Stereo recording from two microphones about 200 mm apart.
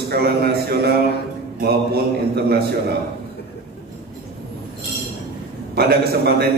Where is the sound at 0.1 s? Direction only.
50° right (ahead or behind).